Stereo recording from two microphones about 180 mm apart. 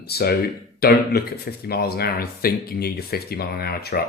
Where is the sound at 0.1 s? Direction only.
60° left (ahead or behind).